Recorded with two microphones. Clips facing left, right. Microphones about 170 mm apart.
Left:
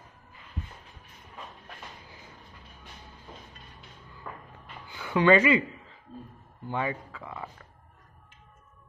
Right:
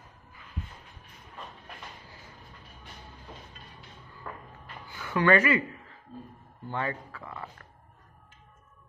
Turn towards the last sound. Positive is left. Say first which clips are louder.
# left 1 dB
turn(degrees=15)  # may be behind; listen again after turning